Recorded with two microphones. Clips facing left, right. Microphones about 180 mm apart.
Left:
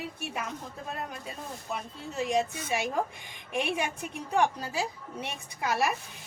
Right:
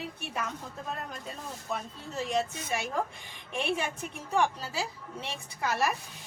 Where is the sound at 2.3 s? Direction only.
15° left (ahead or behind).